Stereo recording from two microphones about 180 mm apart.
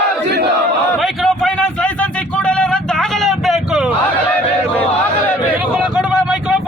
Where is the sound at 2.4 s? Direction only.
5° left (ahead or behind).